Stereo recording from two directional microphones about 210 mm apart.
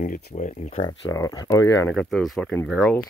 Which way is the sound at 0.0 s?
35° left (ahead or behind).